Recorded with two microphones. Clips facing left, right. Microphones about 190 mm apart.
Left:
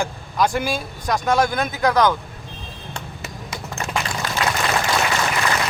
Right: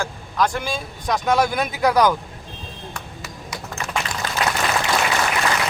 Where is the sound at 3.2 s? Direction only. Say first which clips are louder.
Left 1 dB; 25° left (ahead or behind).